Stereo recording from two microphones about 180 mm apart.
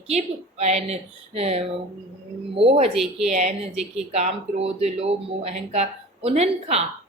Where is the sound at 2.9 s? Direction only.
Centre (ahead or behind).